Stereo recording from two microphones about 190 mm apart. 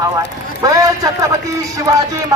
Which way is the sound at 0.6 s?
20° right (ahead or behind).